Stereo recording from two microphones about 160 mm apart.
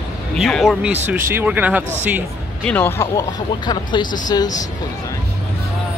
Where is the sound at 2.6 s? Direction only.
10° left (ahead or behind).